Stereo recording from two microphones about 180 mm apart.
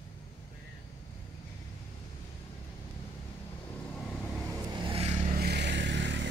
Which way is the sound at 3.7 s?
5° left (ahead or behind).